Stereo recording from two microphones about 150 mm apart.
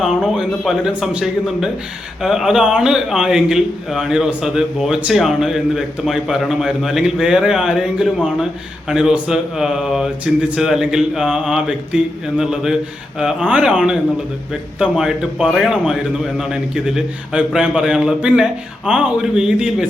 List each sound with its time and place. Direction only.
0.0 s a man's voice: 5° right (ahead or behind)